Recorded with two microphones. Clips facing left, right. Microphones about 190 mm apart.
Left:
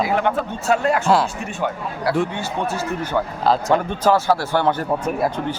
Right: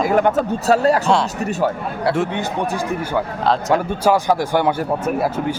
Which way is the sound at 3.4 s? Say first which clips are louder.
Even; centre (ahead or behind).